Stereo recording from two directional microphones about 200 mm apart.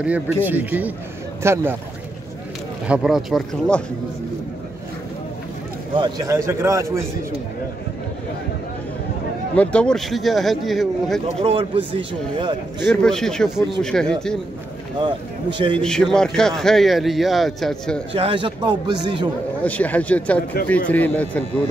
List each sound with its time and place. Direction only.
0.0 s a man's voice: 10° right (ahead or behind)
2.9 s a man's voice: centre (ahead or behind)
5.9 s a man's voice: 20° right (ahead or behind)
9.6 s a man's voice: 5° left (ahead or behind)
11.3 s speech: 30° right (ahead or behind)
12.8 s a man's voice: centre (ahead or behind)
15.0 s speech: 25° right (ahead or behind)
15.8 s a man's voice: 5° left (ahead or behind)
18.1 s speech: 25° right (ahead or behind)
19.6 s speech: 5° left (ahead or behind)